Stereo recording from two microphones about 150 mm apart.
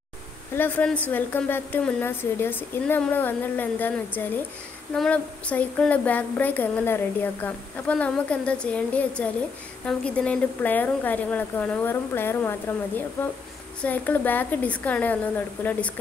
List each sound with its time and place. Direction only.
0.6 s speech: 10° left (ahead or behind)